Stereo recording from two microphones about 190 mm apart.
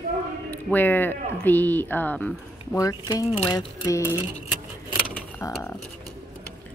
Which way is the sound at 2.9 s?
20° left (ahead or behind).